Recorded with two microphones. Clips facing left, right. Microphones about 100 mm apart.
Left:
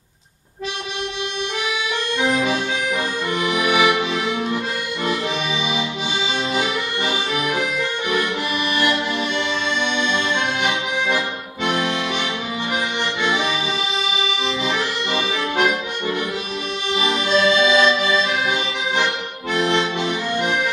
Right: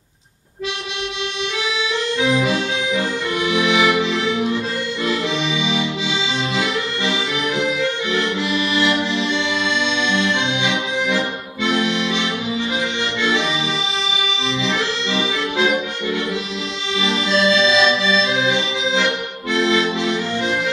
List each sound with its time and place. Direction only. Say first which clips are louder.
3.4 s accordion: right 1 dB; 5° left (ahead or behind)
10.2 s accordion: right 1 dB; 50° left (ahead or behind)
15.0 s accordion: right 1 dB; 50° left (ahead or behind)
16.9 s accordion: even; 50° left (ahead or behind)
18.2 s music: right 2 dB; 50° left (ahead or behind)
19.6 s accordion: right 2 dB; 50° left (ahead or behind)